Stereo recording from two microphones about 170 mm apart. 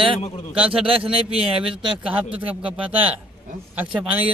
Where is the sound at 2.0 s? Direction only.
10° right (ahead or behind).